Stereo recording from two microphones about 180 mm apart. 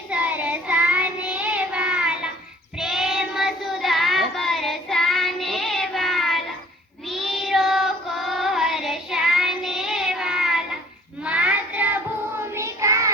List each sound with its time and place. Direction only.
0.1 s child singing: 10° right (ahead or behind)